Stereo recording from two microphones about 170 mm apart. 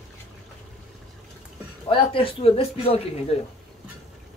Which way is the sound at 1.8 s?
30° left (ahead or behind).